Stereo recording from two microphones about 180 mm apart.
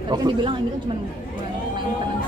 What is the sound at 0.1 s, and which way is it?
Speech, 25° right (ahead or behind).